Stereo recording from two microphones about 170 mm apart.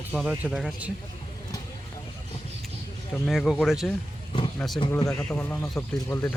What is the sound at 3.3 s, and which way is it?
Speech, centre (ahead or behind).